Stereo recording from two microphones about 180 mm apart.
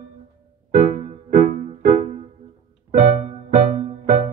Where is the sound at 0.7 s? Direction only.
45° right (ahead or behind).